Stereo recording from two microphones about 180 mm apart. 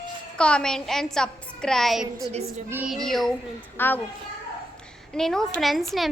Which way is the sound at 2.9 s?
Centre (ahead or behind).